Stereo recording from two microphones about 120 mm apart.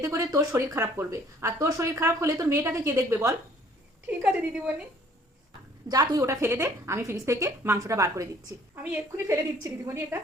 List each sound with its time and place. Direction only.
0.0 s speech: 25° right (ahead or behind)
4.0 s a woman's voice: 10° right (ahead or behind)
5.9 s speech: 35° right (ahead or behind)